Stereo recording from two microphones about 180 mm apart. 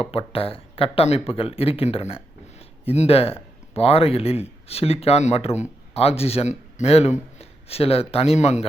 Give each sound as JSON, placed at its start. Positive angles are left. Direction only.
{"t": 0.0, "sound": "speech", "side_deg": 30}